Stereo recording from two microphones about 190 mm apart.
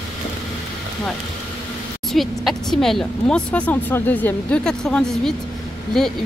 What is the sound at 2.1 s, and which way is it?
A woman's voice, centre (ahead or behind).